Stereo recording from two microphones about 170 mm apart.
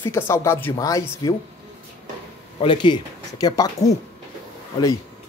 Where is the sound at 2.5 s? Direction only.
30° left (ahead or behind).